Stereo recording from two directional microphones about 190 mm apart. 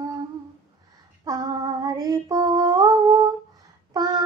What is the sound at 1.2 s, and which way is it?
Female singing, 20° right (ahead or behind).